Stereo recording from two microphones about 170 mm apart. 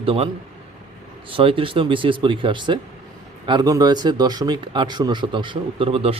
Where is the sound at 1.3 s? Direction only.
30° right (ahead or behind).